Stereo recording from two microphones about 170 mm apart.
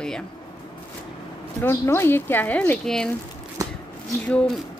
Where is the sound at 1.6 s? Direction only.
15° left (ahead or behind).